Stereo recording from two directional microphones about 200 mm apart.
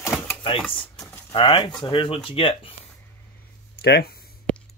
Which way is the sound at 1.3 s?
25° left (ahead or behind).